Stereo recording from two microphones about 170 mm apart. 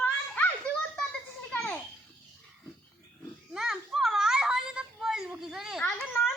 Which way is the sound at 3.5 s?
5° right (ahead or behind).